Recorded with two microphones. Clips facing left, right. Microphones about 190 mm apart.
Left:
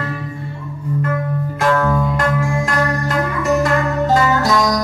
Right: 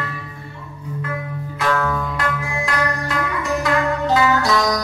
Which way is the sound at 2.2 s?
45° left (ahead or behind).